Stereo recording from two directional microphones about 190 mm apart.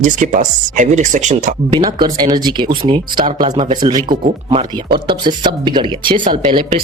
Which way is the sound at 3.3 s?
40° right (ahead or behind).